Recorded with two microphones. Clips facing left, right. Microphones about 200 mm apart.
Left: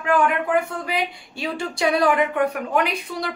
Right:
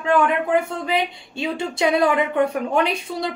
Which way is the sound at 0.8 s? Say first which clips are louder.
Right 3 dB; 25° right (ahead or behind).